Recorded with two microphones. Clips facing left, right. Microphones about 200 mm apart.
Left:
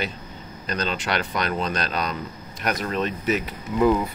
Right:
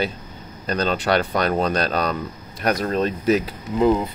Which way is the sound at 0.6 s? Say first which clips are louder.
Right 5 dB; 40° right (ahead or behind).